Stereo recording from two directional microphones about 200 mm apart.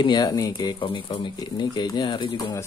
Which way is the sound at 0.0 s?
20° left (ahead or behind).